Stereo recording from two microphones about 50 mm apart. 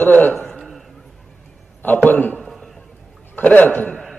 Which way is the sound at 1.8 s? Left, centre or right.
Left.